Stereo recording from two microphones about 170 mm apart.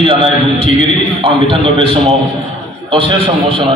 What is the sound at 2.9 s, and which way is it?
Speech, 30° right (ahead or behind).